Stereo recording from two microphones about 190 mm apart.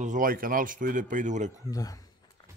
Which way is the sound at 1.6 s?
20° left (ahead or behind).